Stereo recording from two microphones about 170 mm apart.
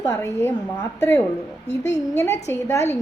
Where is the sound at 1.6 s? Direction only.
90° left.